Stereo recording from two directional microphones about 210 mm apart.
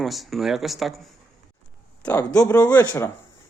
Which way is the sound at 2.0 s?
10° left (ahead or behind).